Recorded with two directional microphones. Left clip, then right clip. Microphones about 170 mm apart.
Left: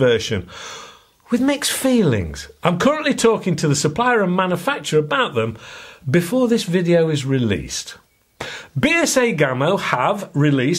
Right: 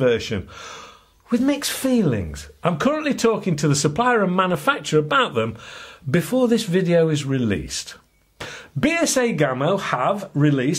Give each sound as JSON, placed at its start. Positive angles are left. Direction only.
{"t": 0.0, "sound": "speech", "side_deg": 25}